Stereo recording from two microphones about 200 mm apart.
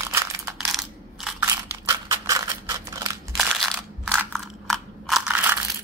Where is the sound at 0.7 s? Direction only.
Centre (ahead or behind).